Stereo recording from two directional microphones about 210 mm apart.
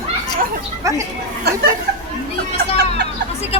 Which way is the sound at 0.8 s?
15° right (ahead or behind).